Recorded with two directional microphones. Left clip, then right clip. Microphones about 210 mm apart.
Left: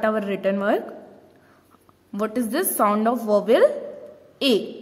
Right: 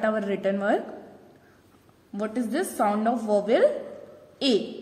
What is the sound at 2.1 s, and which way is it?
A woman's voice, 40° left (ahead or behind).